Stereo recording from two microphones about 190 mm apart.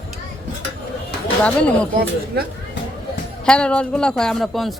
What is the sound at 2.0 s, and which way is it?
Speech, 55° right (ahead or behind).